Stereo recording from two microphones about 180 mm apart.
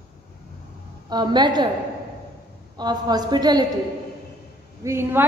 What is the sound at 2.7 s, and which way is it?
Speech, 25° right (ahead or behind).